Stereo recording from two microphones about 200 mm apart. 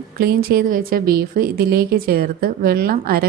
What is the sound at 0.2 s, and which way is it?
Speech, 50° right (ahead or behind).